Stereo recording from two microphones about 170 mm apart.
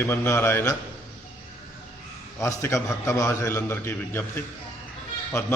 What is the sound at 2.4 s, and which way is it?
A man's voice, 15° left (ahead or behind).